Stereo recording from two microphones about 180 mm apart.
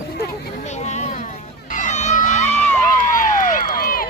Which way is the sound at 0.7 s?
40° left (ahead or behind).